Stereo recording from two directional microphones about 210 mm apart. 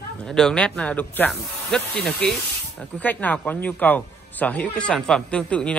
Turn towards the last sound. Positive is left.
turn(degrees=5)  # may be behind; listen again after turning